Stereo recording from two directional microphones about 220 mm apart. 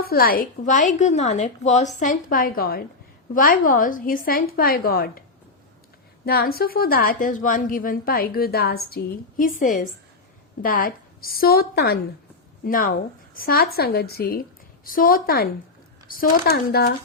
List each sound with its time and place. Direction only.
0.0 s a woman's voice: 45° left (ahead or behind)
6.2 s a woman's voice: 45° left (ahead or behind)